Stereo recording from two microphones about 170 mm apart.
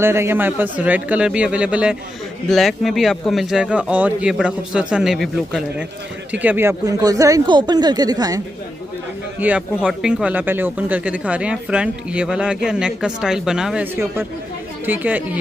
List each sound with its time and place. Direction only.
0.0 s a man's voice: 15° right (ahead or behind)
6.3 s speech: 10° right (ahead or behind)
9.4 s speech: 5° right (ahead or behind)
14.9 s speech: 10° right (ahead or behind)